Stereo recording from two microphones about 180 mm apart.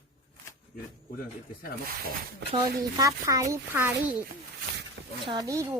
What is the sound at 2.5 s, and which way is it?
Speech, 20° right (ahead or behind).